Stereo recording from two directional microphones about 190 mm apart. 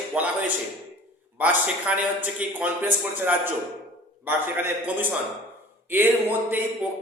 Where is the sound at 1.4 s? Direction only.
10° right (ahead or behind).